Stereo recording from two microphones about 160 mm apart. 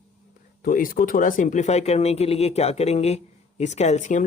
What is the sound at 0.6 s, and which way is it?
Speech, 60° left (ahead or behind).